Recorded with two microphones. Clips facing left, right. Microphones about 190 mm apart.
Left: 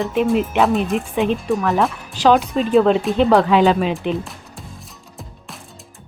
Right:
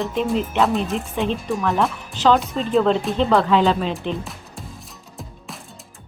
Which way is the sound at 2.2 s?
15° left (ahead or behind).